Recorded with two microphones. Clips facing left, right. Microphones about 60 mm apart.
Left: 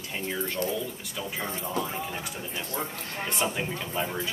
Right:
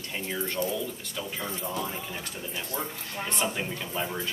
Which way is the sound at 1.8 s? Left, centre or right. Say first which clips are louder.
Left 2 dB; centre.